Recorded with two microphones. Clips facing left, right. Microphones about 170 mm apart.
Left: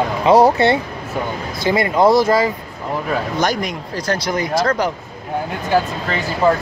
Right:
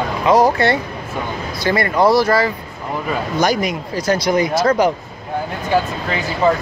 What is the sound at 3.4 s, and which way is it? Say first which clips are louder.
Speech: right 2 dB; 5° right (ahead or behind).